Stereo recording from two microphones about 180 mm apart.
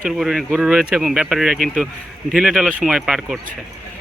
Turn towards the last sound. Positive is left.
turn(degrees=-5)  # may be behind; listen again after turning